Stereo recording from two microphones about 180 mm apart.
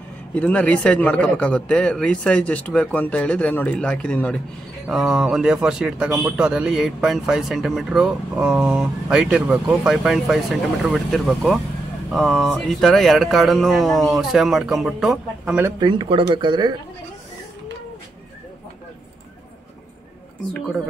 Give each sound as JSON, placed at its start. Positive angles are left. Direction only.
{"t": 0.3, "sound": "a man's voice", "side_deg": 5}
{"t": 15.6, "sound": "speech", "side_deg": -25}
{"t": 20.5, "sound": "speech", "side_deg": 5}